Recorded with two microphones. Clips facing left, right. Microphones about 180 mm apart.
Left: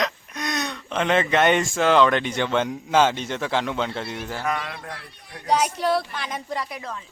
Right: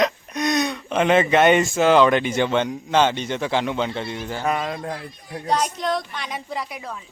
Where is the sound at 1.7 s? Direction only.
5° right (ahead or behind).